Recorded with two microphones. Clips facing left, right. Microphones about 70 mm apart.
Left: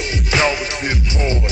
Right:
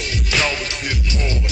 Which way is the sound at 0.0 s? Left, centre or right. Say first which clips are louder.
Left 4 dB; left.